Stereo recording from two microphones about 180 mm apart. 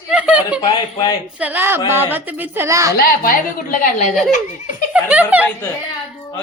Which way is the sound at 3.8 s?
40° left (ahead or behind).